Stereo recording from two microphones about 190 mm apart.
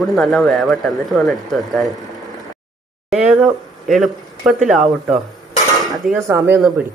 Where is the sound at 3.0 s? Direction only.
5° right (ahead or behind).